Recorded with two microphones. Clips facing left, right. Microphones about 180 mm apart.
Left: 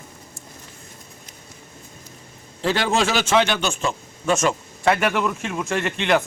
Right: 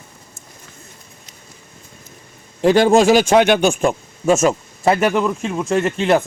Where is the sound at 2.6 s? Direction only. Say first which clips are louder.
Right 9 dB; 50° right (ahead or behind).